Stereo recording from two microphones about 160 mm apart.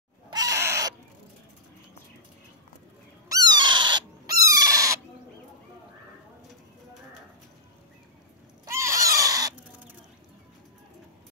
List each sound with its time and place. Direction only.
0.3 s cat: 20° right (ahead or behind)
3.3 s owl: 25° right (ahead or behind)
8.6 s pig: 15° right (ahead or behind)